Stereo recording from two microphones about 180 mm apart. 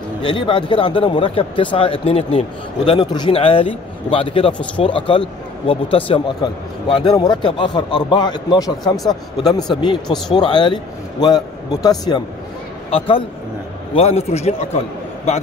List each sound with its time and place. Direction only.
0.2 s speech: 25° left (ahead or behind)
10.0 s speech: centre (ahead or behind)
10.3 s a man's voice: 25° left (ahead or behind)